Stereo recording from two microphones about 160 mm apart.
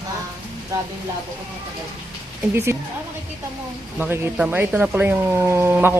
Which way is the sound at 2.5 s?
15° right (ahead or behind).